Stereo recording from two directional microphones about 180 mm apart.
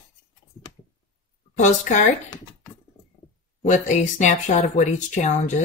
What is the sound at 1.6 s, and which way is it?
Speech, 45° left (ahead or behind).